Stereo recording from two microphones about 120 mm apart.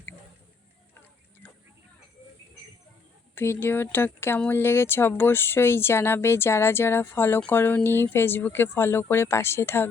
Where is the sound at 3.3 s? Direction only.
20° left (ahead or behind).